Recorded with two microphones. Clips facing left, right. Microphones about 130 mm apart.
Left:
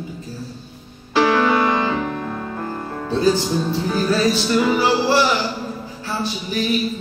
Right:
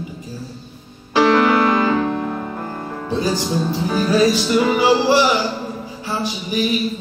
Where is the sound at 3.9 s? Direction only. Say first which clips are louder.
Right 3 dB; 15° right (ahead or behind).